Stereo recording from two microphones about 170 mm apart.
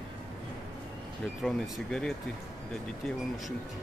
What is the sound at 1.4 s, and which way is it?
Speech, centre (ahead or behind).